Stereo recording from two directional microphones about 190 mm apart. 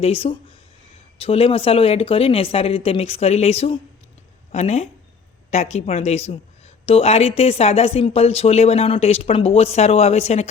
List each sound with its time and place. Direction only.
0.0 s speech: 30° left (ahead or behind)